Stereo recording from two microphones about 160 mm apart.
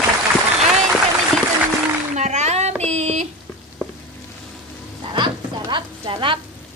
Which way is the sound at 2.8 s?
45° right (ahead or behind).